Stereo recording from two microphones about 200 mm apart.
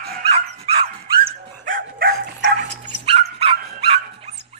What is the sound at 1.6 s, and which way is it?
Bow-wow, 45° right (ahead or behind).